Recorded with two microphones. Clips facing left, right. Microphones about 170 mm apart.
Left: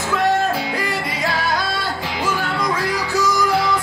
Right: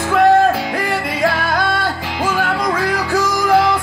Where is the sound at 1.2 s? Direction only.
55° right (ahead or behind).